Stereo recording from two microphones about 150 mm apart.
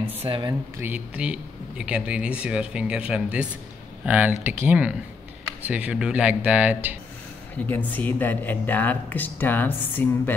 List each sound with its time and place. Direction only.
0.2 s speech: 35° right (ahead or behind)
0.5 s speech: 15° right (ahead or behind)
7.6 s speech: 10° left (ahead or behind)